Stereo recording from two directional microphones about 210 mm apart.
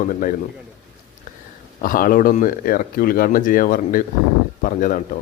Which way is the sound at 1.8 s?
40° left (ahead or behind).